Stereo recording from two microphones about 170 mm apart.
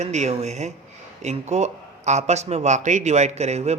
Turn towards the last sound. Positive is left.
turn(degrees=-40)  # may be behind; listen again after turning